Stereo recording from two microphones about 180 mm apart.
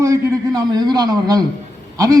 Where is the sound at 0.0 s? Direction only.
15° right (ahead or behind).